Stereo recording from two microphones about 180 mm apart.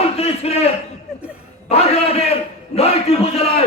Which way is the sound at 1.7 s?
35° left (ahead or behind).